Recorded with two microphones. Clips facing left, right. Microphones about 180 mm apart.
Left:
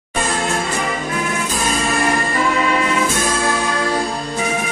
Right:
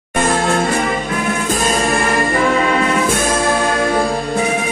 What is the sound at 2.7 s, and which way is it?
Music, 55° right (ahead or behind).